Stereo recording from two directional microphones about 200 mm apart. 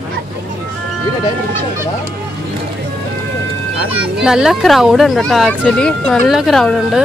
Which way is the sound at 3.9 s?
5° right (ahead or behind).